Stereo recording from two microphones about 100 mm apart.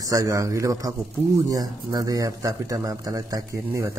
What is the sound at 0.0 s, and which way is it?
A man's voice, 35° right (ahead or behind).